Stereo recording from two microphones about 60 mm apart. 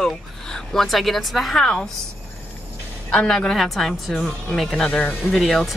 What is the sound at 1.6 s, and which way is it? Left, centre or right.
Speech, centre.